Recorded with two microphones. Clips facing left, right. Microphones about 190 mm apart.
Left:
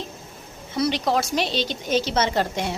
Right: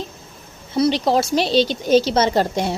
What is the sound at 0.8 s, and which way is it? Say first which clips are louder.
A woman's voice: right 5 dB; 30° right (ahead or behind).